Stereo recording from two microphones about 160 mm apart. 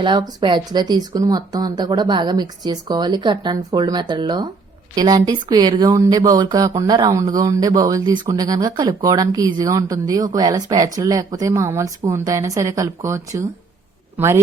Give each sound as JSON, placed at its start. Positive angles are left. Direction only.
{"t": 0.0, "sound": "speech", "side_deg": -30}